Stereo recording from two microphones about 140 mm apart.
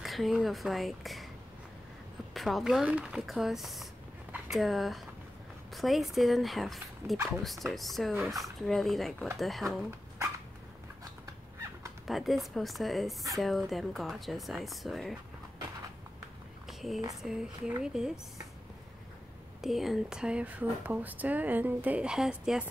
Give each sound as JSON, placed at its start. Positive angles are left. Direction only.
{"t": 0.0, "sound": "speech", "side_deg": 0}
{"t": 2.3, "sound": "speech", "side_deg": 0}
{"t": 9.8, "sound": "dog", "side_deg": -20}
{"t": 12.1, "sound": "speech", "side_deg": 0}
{"t": 16.6, "sound": "a sound", "side_deg": 0}
{"t": 17.2, "sound": "speech", "side_deg": -5}
{"t": 19.6, "sound": "speech", "side_deg": 0}